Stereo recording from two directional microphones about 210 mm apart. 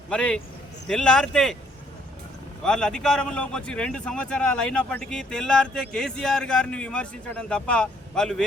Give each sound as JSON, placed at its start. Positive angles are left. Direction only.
{"t": 0.1, "sound": "a man's voice", "side_deg": 5}
{"t": 2.6, "sound": "a man's voice", "side_deg": 5}